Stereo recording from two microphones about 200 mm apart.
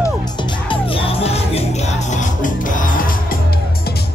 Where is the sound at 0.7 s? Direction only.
30° left (ahead or behind).